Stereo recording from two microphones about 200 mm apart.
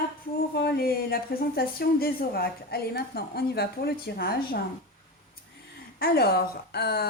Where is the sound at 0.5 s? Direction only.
50° left (ahead or behind).